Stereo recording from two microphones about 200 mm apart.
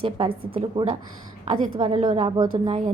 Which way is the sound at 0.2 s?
25° right (ahead or behind).